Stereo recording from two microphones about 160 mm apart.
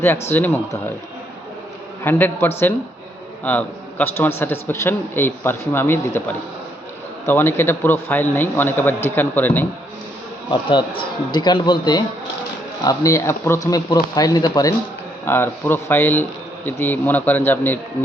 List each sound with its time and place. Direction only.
0.0 s a man's voice: 15° left (ahead or behind)
2.0 s a man's voice: 15° left (ahead or behind)
10.5 s speech: 30° left (ahead or behind)
15.2 s a man's voice: 15° left (ahead or behind)